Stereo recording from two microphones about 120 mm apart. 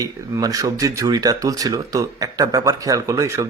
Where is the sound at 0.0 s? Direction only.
30° right (ahead or behind).